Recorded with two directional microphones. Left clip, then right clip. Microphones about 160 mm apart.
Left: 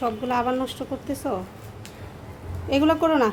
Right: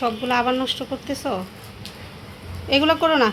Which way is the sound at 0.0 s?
5° left (ahead or behind).